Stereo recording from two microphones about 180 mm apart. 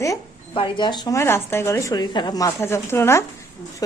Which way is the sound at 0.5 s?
25° left (ahead or behind).